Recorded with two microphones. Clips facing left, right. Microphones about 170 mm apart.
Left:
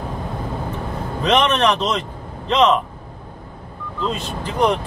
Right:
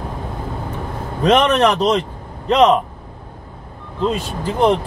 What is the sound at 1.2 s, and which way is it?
Speech, 40° right (ahead or behind).